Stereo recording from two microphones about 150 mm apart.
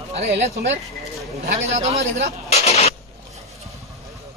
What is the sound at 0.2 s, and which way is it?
Speech, 50° right (ahead or behind).